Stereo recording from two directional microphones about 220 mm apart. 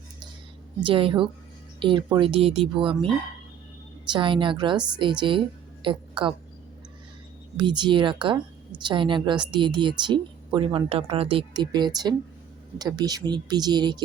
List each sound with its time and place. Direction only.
0.8 s speech: 25° right (ahead or behind)
4.1 s a woman's voice: 20° right (ahead or behind)
7.5 s speech: 20° right (ahead or behind)